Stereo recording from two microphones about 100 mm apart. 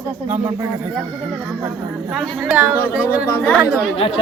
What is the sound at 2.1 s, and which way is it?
Speech, centre (ahead or behind).